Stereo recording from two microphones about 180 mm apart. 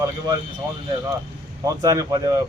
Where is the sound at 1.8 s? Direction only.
20° right (ahead or behind).